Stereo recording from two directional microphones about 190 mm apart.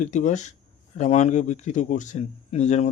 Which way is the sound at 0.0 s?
40° left (ahead or behind).